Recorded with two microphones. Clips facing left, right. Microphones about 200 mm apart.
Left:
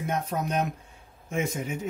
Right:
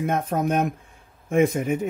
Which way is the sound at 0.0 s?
55° right (ahead or behind).